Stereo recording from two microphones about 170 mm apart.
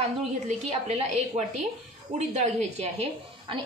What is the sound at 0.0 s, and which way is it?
A woman's voice, 40° right (ahead or behind).